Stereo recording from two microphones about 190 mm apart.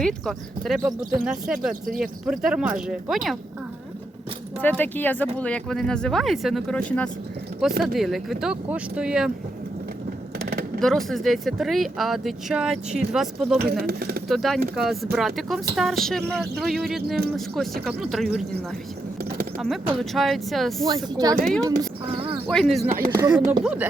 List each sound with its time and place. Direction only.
0.0 s speech: 5° left (ahead or behind)
4.6 s speech: 10° left (ahead or behind)
10.4 s a sound: 55° right (ahead or behind)
10.8 s speech: centre (ahead or behind)
13.8 s speech: 55° right (ahead or behind)
14.3 s speech: centre (ahead or behind)
20.0 s speech: centre (ahead or behind)
20.8 s speech: 20° right (ahead or behind)
22.4 s speech: centre (ahead or behind)
23.1 s speech: 15° right (ahead or behind)